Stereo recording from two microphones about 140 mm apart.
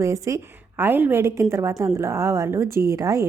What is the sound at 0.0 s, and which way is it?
A woman's voice, 20° right (ahead or behind).